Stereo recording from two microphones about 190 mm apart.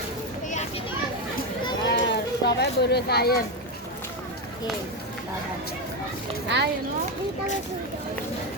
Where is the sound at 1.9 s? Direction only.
60° left (ahead or behind).